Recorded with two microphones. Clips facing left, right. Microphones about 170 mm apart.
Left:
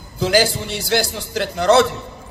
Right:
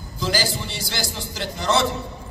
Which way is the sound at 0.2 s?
60° left (ahead or behind).